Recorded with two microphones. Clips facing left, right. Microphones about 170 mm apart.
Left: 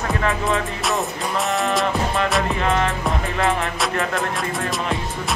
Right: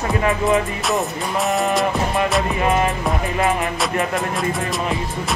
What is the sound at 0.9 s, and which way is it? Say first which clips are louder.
Music: right 2 dB; centre (ahead or behind).